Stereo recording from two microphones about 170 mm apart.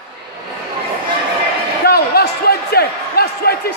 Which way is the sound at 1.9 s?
65° left (ahead or behind).